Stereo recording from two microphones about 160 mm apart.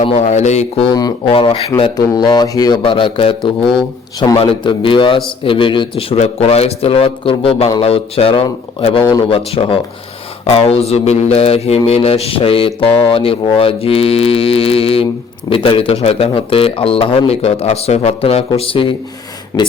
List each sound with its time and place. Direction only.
0.0 s speech: 45° left (ahead or behind)
0.9 s a man's voice: 25° left (ahead or behind)
19.5 s speech: 20° left (ahead or behind)